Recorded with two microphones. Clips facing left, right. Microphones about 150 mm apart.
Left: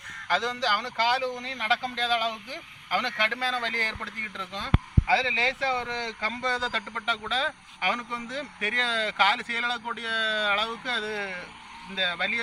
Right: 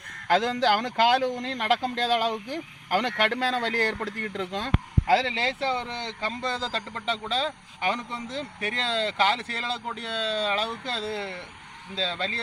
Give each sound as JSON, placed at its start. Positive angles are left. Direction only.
{"t": 0.3, "sound": "speech", "side_deg": -50}
{"t": 5.6, "sound": "speech", "side_deg": -25}